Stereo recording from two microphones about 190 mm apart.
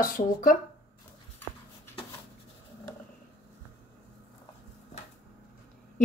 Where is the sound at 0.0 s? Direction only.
45° left (ahead or behind).